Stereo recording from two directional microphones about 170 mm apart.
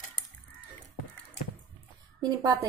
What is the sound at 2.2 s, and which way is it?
Speech, 20° right (ahead or behind).